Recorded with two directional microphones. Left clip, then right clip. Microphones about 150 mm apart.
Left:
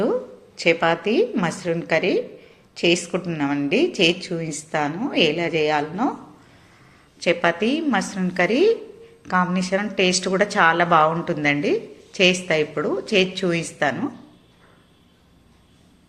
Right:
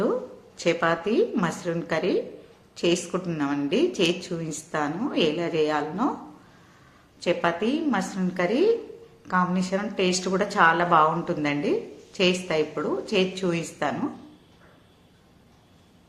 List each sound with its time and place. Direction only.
0.0 s a woman's voice: 5° left (ahead or behind)
7.2 s a woman's voice: 15° left (ahead or behind)